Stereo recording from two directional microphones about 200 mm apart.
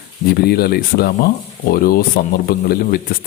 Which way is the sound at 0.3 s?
50° left (ahead or behind).